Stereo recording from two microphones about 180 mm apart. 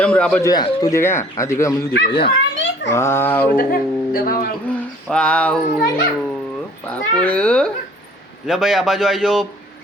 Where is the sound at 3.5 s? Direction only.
55° left (ahead or behind).